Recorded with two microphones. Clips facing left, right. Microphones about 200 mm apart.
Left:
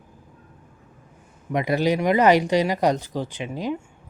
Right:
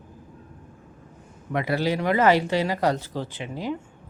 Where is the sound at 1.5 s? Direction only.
15° left (ahead or behind).